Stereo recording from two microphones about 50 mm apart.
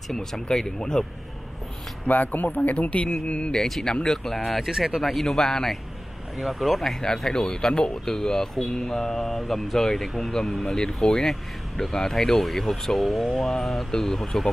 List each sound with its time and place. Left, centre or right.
0.1 s speech: centre
2.0 s speech: left
3.5 s speech: centre
4.5 s speech: centre
6.3 s speech: centre